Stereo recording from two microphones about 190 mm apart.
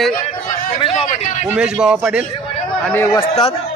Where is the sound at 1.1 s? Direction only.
40° left (ahead or behind).